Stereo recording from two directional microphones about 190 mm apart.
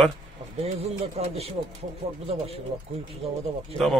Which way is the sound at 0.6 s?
35° right (ahead or behind).